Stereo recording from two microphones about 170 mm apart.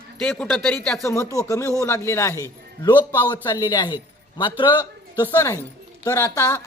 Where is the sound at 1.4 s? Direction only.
20° left (ahead or behind).